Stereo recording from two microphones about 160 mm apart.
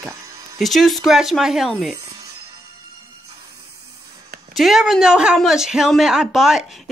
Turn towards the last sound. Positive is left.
turn(degrees=-5)  # may be behind; listen again after turning